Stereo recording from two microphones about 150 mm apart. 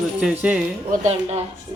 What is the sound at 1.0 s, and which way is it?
Speech, 45° right (ahead or behind).